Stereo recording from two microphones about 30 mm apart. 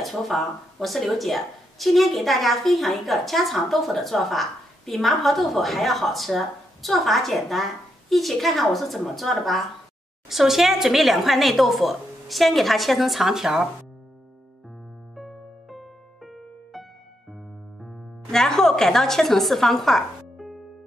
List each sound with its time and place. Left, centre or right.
0.0 s a woman's voice: centre
10.3 s a woman's voice: centre
13.3 s speech: centre
15.1 s music: centre
18.3 s a woman's voice: centre